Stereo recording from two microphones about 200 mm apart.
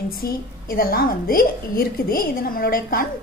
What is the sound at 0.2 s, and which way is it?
A woman's voice, 45° left (ahead or behind).